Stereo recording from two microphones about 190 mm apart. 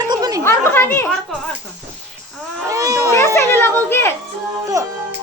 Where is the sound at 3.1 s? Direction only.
15° left (ahead or behind).